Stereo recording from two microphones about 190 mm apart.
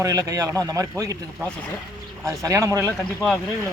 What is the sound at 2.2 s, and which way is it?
Speech, 15° right (ahead or behind).